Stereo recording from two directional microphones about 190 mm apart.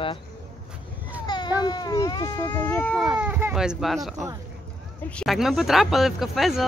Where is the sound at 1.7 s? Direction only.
20° left (ahead or behind).